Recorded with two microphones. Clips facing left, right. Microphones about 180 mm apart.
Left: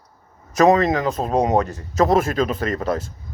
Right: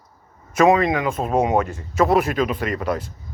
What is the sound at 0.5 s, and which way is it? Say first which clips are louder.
Speech: left 1 dB; 40° left (ahead or behind).